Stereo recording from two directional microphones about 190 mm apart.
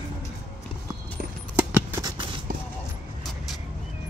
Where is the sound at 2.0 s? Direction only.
20° right (ahead or behind).